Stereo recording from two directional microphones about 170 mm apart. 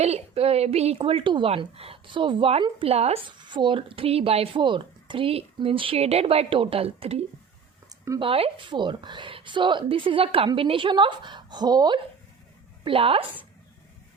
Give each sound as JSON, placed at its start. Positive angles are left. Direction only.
{"t": 0.0, "sound": "a woman's voice", "side_deg": -35}